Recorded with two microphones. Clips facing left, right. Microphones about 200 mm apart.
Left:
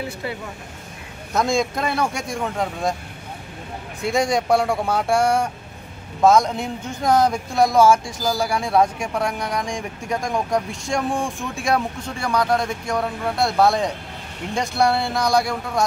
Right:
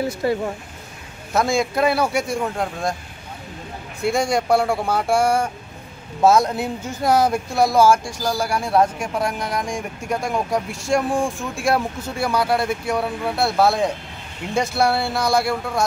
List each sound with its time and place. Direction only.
0.0 s speech: 40° right (ahead or behind)
1.3 s speech: 5° right (ahead or behind)
4.0 s speech: centre (ahead or behind)